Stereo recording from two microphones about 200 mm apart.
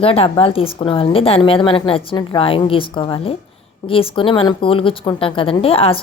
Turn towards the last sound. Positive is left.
turn(degrees=30)  # may be behind; listen again after turning